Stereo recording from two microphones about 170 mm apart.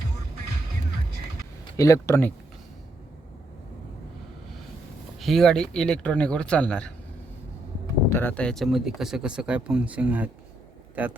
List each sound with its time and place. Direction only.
1.7 s speech: 20° left (ahead or behind)
5.2 s speech: centre (ahead or behind)
8.1 s speech: 10° left (ahead or behind); by 11.2 s 10° right (ahead or behind)